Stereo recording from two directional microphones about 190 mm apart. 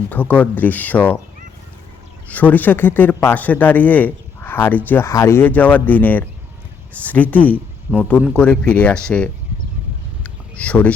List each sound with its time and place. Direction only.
0.1 s speech: 10° left (ahead or behind)
2.2 s speech: 10° left (ahead or behind)
10.2 s a sound: 5° left (ahead or behind)